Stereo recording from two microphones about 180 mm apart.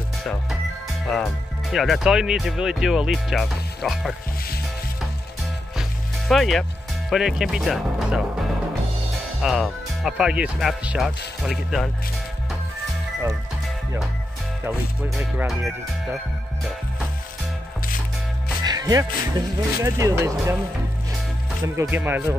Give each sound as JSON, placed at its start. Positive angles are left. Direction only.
{"t": 0.2, "sound": "speech", "side_deg": 0}
{"t": 5.8, "sound": "music", "side_deg": 0}
{"t": 7.1, "sound": "speech", "side_deg": 0}
{"t": 9.4, "sound": "speech", "side_deg": 0}
{"t": 14.6, "sound": "speech", "side_deg": -10}
{"t": 18.6, "sound": "speech", "side_deg": -20}
{"t": 21.7, "sound": "speech", "side_deg": -10}